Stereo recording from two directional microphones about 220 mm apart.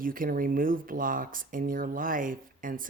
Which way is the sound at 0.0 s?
40° right (ahead or behind).